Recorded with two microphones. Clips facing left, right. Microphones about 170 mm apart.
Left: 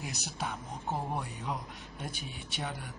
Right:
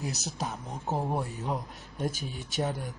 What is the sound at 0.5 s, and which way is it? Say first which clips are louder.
A man's voice: right 2 dB; 40° right (ahead or behind).